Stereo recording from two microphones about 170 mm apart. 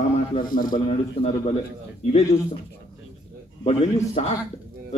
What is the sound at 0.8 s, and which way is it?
Speech, 35° left (ahead or behind).